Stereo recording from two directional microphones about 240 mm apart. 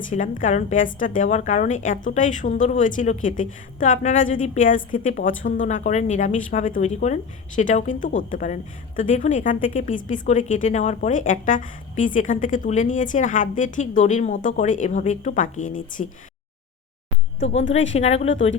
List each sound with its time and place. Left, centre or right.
0.1 s speech: left
17.6 s a woman's voice: left
17.9 s speech: left